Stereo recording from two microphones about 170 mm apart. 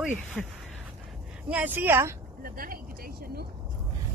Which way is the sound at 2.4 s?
60° right (ahead or behind).